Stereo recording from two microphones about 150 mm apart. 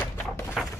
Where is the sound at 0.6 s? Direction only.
Centre (ahead or behind).